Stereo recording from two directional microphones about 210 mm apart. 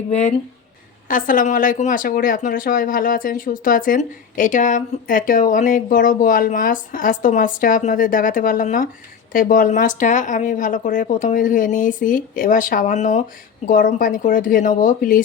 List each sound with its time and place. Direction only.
0.1 s speech: 30° left (ahead or behind)